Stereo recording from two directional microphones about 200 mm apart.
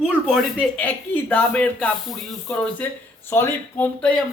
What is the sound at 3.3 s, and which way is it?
Speech, 10° left (ahead or behind).